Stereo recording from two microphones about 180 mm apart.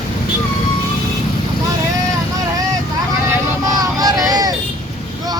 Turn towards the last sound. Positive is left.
turn(degrees=-20)  # may be behind; listen again after turning